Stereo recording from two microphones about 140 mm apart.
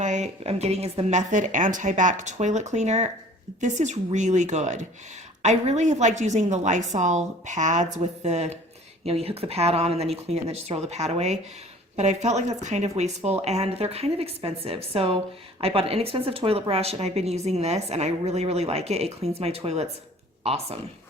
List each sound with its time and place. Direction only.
0.0 s a woman's voice: 55° right (ahead or behind)